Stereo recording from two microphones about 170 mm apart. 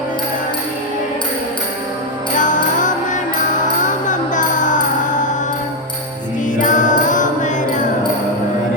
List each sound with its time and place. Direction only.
2.4 s music: 50° left (ahead or behind)
6.6 s music: 50° left (ahead or behind)